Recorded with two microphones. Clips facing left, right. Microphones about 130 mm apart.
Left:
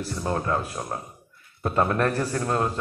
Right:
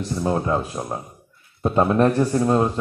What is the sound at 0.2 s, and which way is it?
A man's voice, 20° right (ahead or behind).